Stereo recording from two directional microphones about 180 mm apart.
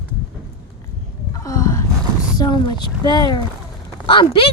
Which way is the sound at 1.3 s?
20° left (ahead or behind).